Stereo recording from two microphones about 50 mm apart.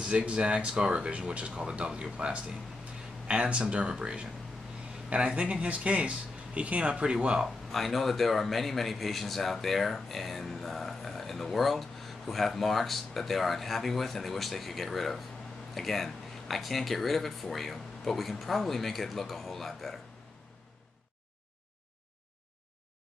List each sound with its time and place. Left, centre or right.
0.0 s speech: right
7.4 s speech: centre